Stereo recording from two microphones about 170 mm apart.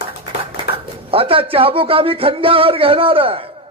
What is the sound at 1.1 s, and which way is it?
Speech, 30° right (ahead or behind).